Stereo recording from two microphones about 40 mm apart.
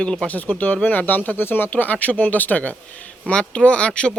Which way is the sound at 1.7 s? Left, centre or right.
Left.